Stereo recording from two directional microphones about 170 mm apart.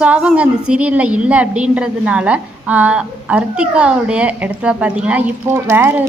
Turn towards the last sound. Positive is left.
turn(degrees=-15)  # may be behind; listen again after turning